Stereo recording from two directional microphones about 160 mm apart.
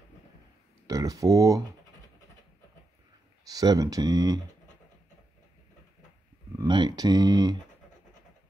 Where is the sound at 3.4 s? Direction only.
25° right (ahead or behind).